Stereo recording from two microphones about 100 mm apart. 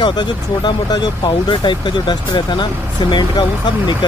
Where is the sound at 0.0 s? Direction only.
50° left (ahead or behind).